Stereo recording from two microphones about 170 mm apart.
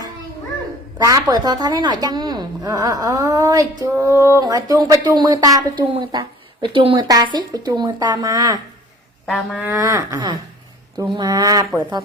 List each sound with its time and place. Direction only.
0.9 s a woman's voice: 20° right (ahead or behind)
9.6 s a woman's voice: 15° right (ahead or behind)